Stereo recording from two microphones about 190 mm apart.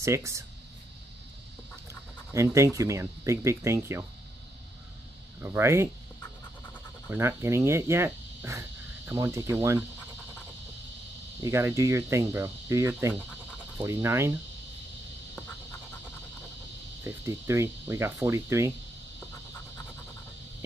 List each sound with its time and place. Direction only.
0.0 s speech: 15° right (ahead or behind)
1.9 s speech: 15° right (ahead or behind)
5.4 s speech: 15° right (ahead or behind)
7.1 s speech: 15° right (ahead or behind)
11.4 s speech: 15° right (ahead or behind)
17.0 s speech: 15° right (ahead or behind)